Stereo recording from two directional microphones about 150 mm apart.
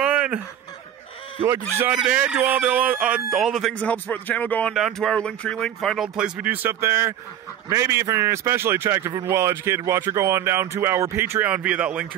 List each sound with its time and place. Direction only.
0.0 s snicker: 5° right (ahead or behind)
1.8 s speech: 10° right (ahead or behind)
3.7 s a man's voice: 10° left (ahead or behind); by 12.1 s 5° right (ahead or behind)